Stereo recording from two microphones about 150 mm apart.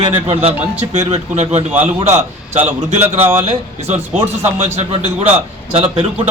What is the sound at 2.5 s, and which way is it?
Speech, 50° right (ahead or behind).